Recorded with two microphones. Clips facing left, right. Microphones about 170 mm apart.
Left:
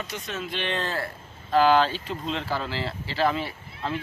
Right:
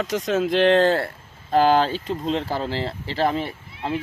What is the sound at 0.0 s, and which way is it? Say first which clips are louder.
Speech: right 11 dB; 90° right.